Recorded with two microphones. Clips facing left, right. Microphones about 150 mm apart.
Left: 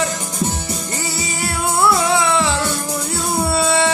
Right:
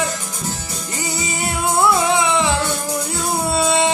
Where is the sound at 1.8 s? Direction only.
15° right (ahead or behind).